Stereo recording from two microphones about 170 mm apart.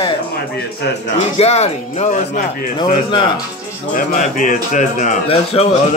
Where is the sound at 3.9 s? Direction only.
50° left (ahead or behind).